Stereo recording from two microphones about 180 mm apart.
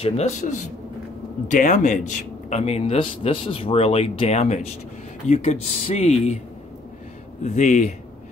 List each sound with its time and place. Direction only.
0.0 s speech: 40° left (ahead or behind)
7.4 s speech: 45° left (ahead or behind)